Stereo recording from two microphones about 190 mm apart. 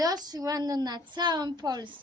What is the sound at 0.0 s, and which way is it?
A woman's voice, 20° right (ahead or behind).